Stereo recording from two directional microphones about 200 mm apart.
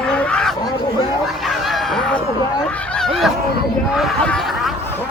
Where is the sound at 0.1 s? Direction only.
5° left (ahead or behind).